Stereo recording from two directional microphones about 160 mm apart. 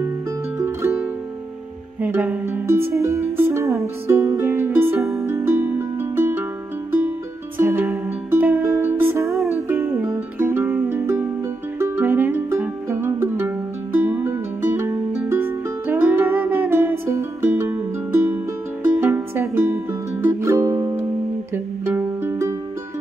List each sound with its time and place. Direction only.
0.6 s music: 15° right (ahead or behind)
2.0 s music: 10° right (ahead or behind)
7.5 s music: 10° right (ahead or behind)